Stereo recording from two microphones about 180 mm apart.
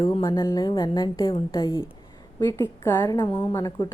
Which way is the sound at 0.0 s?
25° left (ahead or behind).